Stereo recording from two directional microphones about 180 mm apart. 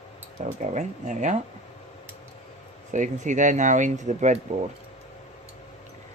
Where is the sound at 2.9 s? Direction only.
45° right (ahead or behind).